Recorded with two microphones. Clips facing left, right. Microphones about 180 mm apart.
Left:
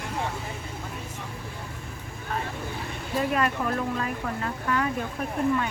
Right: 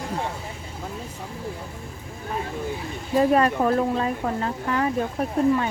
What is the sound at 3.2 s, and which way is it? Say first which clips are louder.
Speech: right 7 dB; 35° right (ahead or behind).